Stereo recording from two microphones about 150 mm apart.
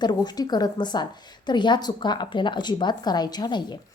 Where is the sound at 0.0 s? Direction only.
25° left (ahead or behind).